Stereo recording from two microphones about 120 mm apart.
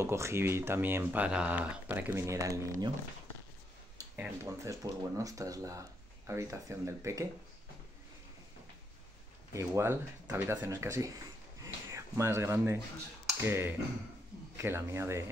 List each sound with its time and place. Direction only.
0.0 s speech: 20° right (ahead or behind)
4.2 s speech: 25° right (ahead or behind)
9.5 s speech: 20° right (ahead or behind)
11.6 s a sound: 25° right (ahead or behind)
13.4 s speech: 20° right (ahead or behind)